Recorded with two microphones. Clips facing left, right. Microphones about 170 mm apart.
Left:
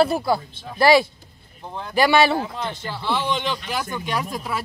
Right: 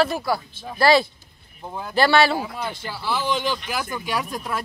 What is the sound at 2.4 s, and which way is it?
Speech, 10° right (ahead or behind).